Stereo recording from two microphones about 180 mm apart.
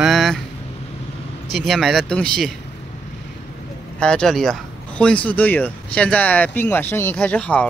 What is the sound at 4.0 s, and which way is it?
Speech, 5° left (ahead or behind).